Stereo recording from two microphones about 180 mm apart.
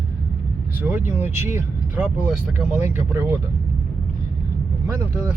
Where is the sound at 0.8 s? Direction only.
10° right (ahead or behind).